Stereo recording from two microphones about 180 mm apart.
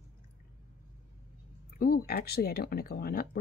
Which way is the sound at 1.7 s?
55° left (ahead or behind).